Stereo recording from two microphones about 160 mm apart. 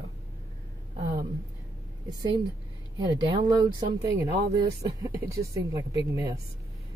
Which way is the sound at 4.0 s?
20° right (ahead or behind).